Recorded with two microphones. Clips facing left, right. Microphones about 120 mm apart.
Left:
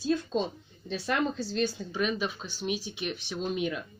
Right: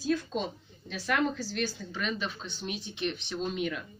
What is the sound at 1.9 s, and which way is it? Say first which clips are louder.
Speech: left 4 dB; 10° left (ahead or behind).